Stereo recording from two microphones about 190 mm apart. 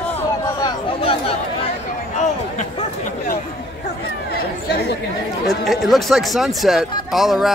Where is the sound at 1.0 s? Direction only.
30° left (ahead or behind).